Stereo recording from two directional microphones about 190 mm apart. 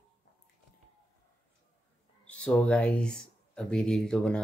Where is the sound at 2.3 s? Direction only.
5° left (ahead or behind).